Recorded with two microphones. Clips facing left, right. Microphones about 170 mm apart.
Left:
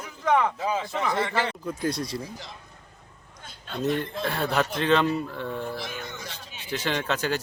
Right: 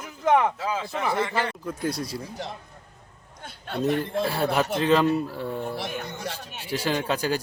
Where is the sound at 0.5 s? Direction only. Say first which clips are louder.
Left 1 dB; 15° left (ahead or behind).